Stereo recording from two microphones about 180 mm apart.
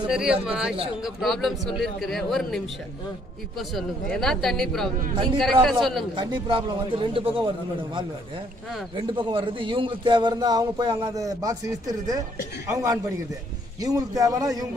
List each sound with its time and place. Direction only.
0.0 s a man's voice: 5° right (ahead or behind)
6.1 s a man's voice: 25° right (ahead or behind)